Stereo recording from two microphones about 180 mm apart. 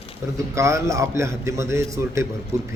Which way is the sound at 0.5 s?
15° right (ahead or behind).